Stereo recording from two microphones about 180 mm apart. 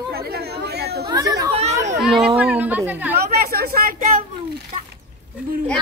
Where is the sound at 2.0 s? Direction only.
Centre (ahead or behind).